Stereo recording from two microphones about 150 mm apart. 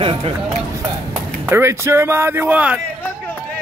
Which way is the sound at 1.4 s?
15° right (ahead or behind).